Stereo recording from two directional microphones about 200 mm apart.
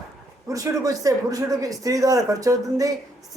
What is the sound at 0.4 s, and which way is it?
Speech, 15° right (ahead or behind).